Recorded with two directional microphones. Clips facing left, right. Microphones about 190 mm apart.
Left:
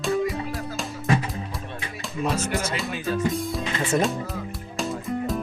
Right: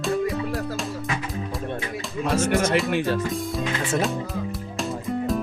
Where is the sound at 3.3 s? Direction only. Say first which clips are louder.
Right 1 dB; centre (ahead or behind).